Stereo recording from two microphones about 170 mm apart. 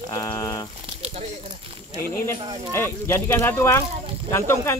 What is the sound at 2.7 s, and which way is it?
Speech, 15° left (ahead or behind).